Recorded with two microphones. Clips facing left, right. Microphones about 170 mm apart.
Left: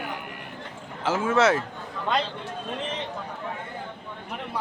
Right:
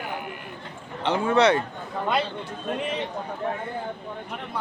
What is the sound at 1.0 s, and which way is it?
Speech, 5° left (ahead or behind).